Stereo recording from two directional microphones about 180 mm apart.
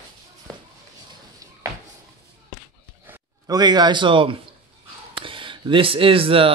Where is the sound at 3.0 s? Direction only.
20° right (ahead or behind).